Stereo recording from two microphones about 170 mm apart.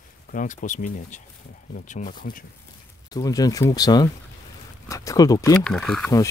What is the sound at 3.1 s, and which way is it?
Speech, 20° left (ahead or behind).